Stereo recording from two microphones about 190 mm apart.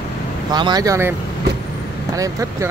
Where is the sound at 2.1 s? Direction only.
15° right (ahead or behind).